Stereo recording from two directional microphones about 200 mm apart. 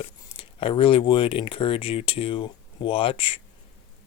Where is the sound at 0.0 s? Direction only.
25° left (ahead or behind).